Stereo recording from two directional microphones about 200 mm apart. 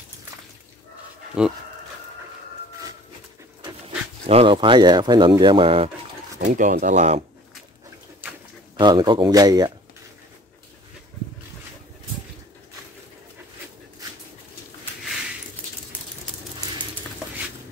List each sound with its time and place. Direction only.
1.4 s speech: 5° right (ahead or behind)
4.3 s speech: 25° right (ahead or behind)
6.5 s speech: 40° right (ahead or behind)
8.7 s speech: 20° right (ahead or behind)